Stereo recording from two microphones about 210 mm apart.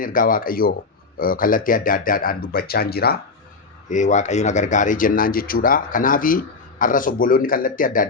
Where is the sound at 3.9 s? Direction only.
35° left (ahead or behind).